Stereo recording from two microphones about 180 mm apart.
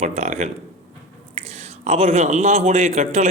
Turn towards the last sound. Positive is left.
turn(degrees=-35)  # may be behind; listen again after turning